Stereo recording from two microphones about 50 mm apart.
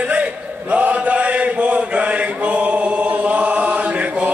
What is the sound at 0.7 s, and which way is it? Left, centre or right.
Chant, right.